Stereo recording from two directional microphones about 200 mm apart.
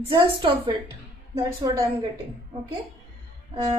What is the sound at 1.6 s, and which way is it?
Music, 20° right (ahead or behind).